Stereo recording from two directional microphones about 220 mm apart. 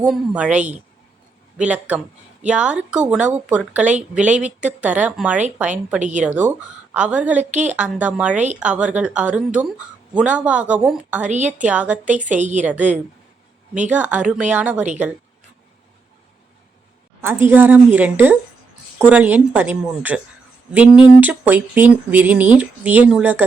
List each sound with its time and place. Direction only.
0.0 s speech: 5° right (ahead or behind)
6.0 s a woman's voice: 35° right (ahead or behind)
6.2 s speech: 5° right (ahead or behind)
7.5 s a woman's voice: 30° right (ahead or behind)
7.8 s speech: 5° right (ahead or behind)
11.3 s a woman's voice: 30° right (ahead or behind)
11.6 s speech: 5° right (ahead or behind)
12.2 s a woman's voice: 35° right (ahead or behind)
13.9 s speech: 5° right (ahead or behind)
17.2 s speech: 10° right (ahead or behind)